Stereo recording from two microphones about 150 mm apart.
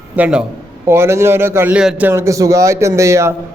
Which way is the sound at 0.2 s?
5° right (ahead or behind).